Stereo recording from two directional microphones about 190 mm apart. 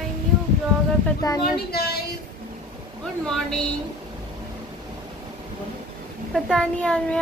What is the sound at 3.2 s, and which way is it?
Speech, 5° left (ahead or behind).